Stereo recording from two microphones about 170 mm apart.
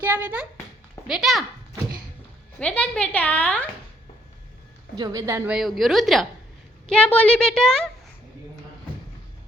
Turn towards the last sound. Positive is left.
turn(degrees=5)  # may be behind; listen again after turning